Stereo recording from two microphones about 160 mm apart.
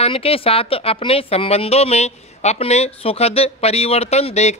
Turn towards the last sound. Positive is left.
turn(degrees=45)  # may be behind; listen again after turning